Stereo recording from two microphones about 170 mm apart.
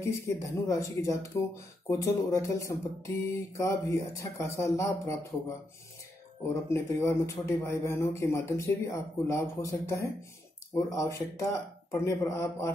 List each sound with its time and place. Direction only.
0.0 s a man's voice: 15° left (ahead or behind)
6.5 s a man's voice: 15° left (ahead or behind)